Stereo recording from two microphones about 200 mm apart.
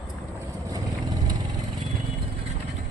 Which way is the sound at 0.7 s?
20° right (ahead or behind).